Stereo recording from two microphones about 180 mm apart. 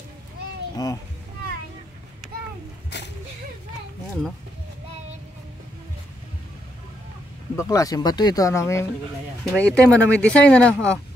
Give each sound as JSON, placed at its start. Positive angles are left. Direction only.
{"t": 2.9, "sound": "a sound", "side_deg": 70}
{"t": 7.5, "sound": "speech", "side_deg": 20}
{"t": 9.4, "sound": "speech", "side_deg": 5}